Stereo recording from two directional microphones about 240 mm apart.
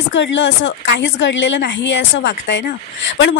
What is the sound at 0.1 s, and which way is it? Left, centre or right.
A woman's voice, left.